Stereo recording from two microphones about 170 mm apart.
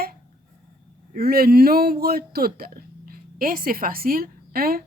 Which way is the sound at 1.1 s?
60° right (ahead or behind).